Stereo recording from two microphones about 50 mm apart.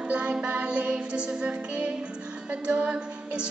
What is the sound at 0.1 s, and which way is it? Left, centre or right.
Music, right.